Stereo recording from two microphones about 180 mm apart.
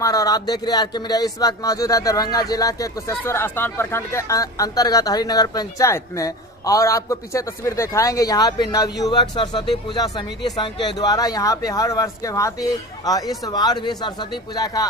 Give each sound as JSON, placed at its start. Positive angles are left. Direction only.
{"t": 0.0, "sound": "speech", "side_deg": 20}